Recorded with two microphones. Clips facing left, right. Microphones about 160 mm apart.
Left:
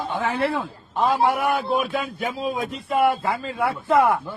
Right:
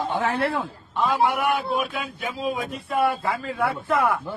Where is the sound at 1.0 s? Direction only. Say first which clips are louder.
Left 2 dB; 35° left (ahead or behind).